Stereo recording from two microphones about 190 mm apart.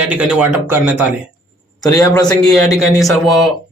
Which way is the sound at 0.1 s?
5° right (ahead or behind).